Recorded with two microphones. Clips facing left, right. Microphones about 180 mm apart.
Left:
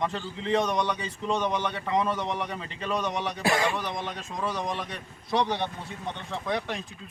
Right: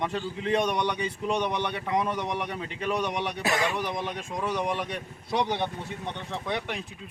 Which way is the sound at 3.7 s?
15° right (ahead or behind).